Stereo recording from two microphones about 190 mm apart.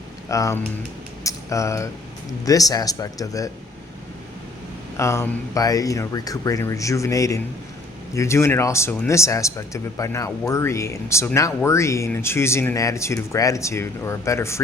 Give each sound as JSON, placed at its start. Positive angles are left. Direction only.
{"t": 0.3, "sound": "speech", "side_deg": 15}
{"t": 1.2, "sound": "a sound", "side_deg": 15}
{"t": 2.4, "sound": "speech", "side_deg": 20}
{"t": 4.9, "sound": "speech", "side_deg": 15}